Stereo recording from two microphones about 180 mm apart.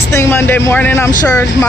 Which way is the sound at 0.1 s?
15° left (ahead or behind).